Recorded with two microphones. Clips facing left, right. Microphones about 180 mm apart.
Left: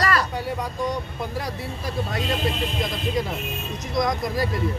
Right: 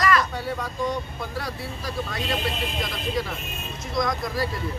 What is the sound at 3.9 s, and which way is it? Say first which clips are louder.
Speech: left 2 dB; 20° left (ahead or behind).